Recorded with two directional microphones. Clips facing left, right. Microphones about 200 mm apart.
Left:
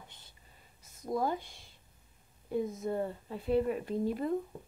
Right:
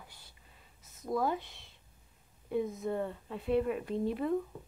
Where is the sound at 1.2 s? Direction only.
Centre (ahead or behind).